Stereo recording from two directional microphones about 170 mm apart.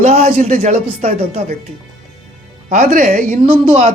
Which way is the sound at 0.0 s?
45° right (ahead or behind).